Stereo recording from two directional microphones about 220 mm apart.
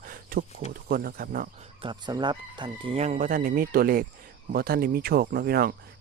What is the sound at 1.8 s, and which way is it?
Speech, 20° right (ahead or behind).